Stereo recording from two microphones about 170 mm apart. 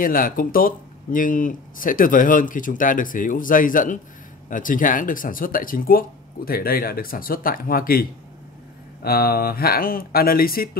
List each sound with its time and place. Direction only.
0.0 s speech: 55° left (ahead or behind)